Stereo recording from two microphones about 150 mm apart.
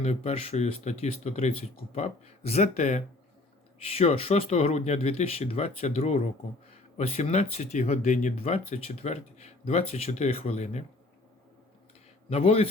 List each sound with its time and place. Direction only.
0.0 s speech: 45° left (ahead or behind)
12.3 s speech: 40° left (ahead or behind)